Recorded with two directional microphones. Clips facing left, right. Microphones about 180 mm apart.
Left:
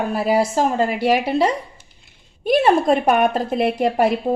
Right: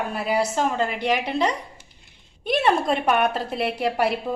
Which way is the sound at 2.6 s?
45° left (ahead or behind).